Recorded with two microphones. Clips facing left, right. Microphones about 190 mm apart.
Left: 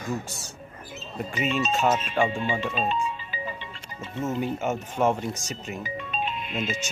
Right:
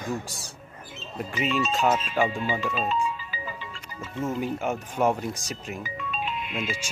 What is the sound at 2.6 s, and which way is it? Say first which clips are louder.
Music: even; 20° left (ahead or behind).